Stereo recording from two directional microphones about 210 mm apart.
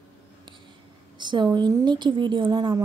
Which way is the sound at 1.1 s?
20° right (ahead or behind).